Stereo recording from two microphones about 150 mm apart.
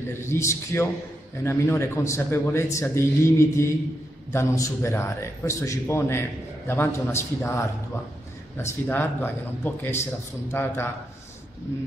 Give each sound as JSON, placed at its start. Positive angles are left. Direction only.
{"t": 0.2, "sound": "a man's voice", "side_deg": 20}